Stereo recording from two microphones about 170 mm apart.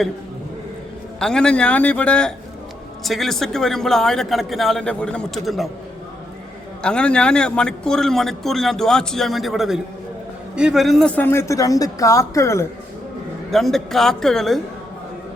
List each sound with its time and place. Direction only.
1.2 s a man's voice: 5° left (ahead or behind)
6.8 s a man's voice: 5° left (ahead or behind)
13.5 s a man's voice: centre (ahead or behind)